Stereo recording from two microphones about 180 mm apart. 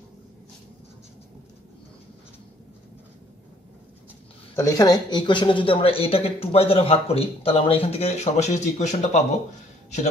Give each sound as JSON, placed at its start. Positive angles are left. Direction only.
{"t": 4.6, "sound": "speech", "side_deg": 20}